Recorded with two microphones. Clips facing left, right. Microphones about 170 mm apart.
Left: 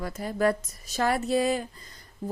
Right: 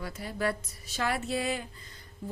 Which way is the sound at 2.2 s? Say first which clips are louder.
Left 6 dB; 45° left (ahead or behind).